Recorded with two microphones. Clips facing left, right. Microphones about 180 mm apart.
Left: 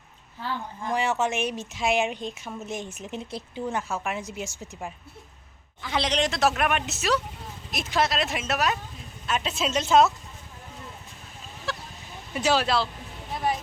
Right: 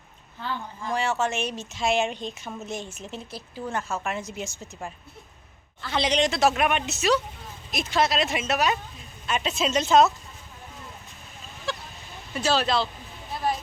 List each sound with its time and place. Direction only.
0.4 s speech: 15° left (ahead or behind)
6.0 s speech: centre (ahead or behind)
11.7 s chicken: 5° left (ahead or behind)
12.3 s speech: 15° left (ahead or behind)